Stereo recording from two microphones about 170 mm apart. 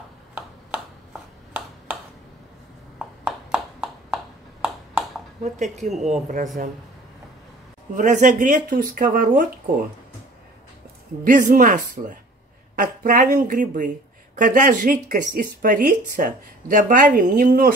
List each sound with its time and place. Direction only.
3.3 s a sound: 5° right (ahead or behind)
5.4 s speech: 45° right (ahead or behind)
7.9 s speech: 45° right (ahead or behind)
11.2 s speech: 50° right (ahead or behind)